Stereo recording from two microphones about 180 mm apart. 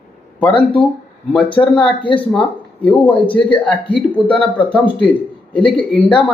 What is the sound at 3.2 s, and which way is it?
Speech, 25° left (ahead or behind).